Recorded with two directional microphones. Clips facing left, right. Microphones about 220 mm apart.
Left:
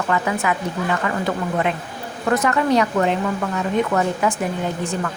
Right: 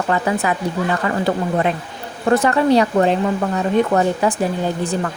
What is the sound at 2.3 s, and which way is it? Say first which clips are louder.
A woman's voice: right 4 dB; 30° right (ahead or behind).